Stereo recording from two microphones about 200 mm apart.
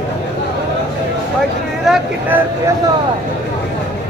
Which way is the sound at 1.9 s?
10° right (ahead or behind).